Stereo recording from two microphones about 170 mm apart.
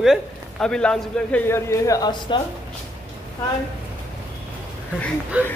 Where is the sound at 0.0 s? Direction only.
Centre (ahead or behind); by 2.4 s 25° left (ahead or behind).